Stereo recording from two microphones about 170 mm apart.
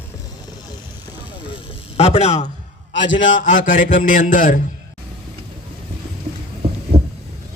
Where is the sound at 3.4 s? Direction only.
50° left (ahead or behind).